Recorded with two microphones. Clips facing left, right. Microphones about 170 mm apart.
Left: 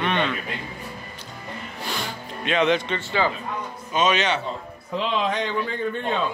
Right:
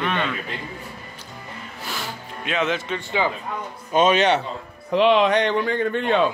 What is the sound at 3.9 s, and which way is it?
Speech, 55° right (ahead or behind).